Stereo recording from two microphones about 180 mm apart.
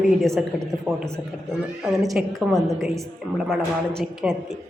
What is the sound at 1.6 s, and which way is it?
A woman's voice, centre (ahead or behind).